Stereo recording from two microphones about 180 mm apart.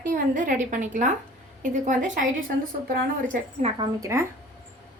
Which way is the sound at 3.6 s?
20° right (ahead or behind).